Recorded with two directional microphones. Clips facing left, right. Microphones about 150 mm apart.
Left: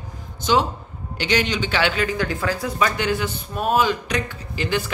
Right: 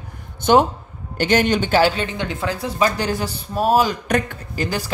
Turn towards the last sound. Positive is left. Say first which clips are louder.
# even
turn(degrees=-40)  # may be behind; listen again after turning